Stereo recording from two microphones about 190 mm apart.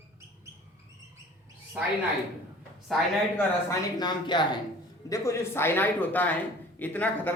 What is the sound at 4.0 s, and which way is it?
Speech, 25° left (ahead or behind).